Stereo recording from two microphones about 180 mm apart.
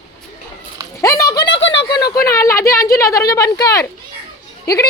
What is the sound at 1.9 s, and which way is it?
Speech, 20° left (ahead or behind).